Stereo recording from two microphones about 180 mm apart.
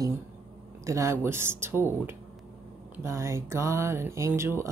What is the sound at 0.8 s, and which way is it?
Speech, 15° right (ahead or behind).